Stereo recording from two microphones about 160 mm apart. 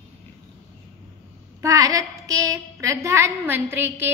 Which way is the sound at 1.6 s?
20° right (ahead or behind).